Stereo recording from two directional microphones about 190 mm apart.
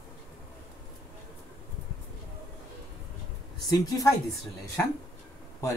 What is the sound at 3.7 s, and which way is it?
Speech, 20° left (ahead or behind).